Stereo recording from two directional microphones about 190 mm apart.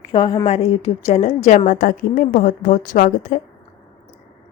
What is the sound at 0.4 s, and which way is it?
A woman's voice, 35° left (ahead or behind).